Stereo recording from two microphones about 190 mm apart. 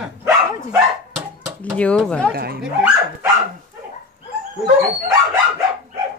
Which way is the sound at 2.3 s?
55° right (ahead or behind).